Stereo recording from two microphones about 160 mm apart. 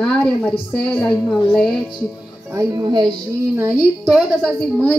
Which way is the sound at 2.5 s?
20° right (ahead or behind).